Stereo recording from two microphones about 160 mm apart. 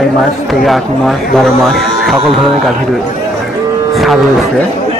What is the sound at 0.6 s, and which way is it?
Speech, centre (ahead or behind).